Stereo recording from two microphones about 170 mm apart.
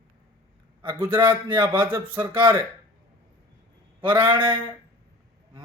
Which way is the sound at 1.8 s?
10° right (ahead or behind).